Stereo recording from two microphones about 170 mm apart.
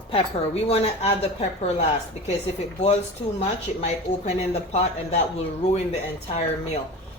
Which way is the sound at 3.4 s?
40° left (ahead or behind).